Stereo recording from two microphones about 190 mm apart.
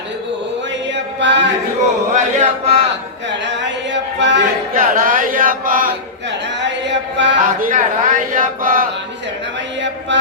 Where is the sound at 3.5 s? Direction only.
70° right (ahead or behind).